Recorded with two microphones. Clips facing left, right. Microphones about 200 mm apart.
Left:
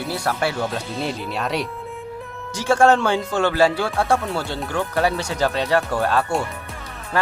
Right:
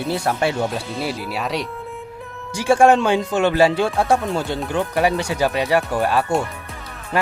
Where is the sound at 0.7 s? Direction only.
Centre (ahead or behind).